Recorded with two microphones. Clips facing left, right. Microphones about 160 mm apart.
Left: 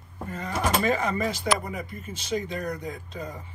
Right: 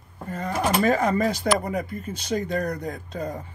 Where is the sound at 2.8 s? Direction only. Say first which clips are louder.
Right 4 dB; 55° right (ahead or behind).